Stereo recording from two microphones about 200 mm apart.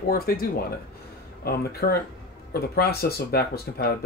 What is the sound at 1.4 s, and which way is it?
Speech, 50° left (ahead or behind).